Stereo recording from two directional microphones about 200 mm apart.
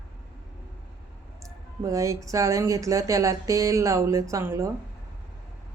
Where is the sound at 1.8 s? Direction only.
15° right (ahead or behind).